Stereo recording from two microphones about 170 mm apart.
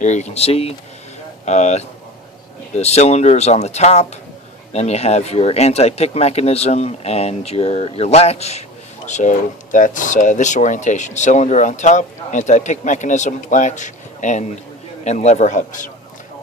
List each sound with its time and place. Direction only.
0.0 s speech: 45° left (ahead or behind)